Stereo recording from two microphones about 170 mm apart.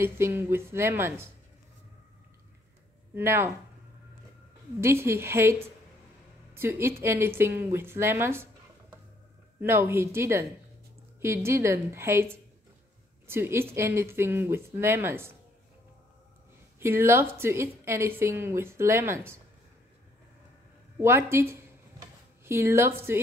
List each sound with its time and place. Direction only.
0.0 s a woman's voice: 15° right (ahead or behind)
3.2 s a woman's voice: 15° right (ahead or behind)
4.7 s a woman's voice: 15° right (ahead or behind)
9.6 s a woman's voice: 15° right (ahead or behind)
16.8 s a woman's voice: 15° right (ahead or behind)
21.0 s a woman's voice: 15° right (ahead or behind)